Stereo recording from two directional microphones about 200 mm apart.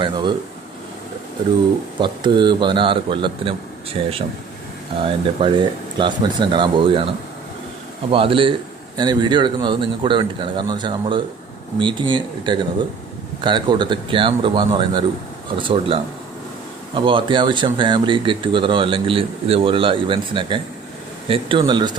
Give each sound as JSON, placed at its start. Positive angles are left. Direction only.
{"t": 0.0, "sound": "speech", "side_deg": -20}
{"t": 2.0, "sound": "speech", "side_deg": -25}
{"t": 8.1, "sound": "speech", "side_deg": -25}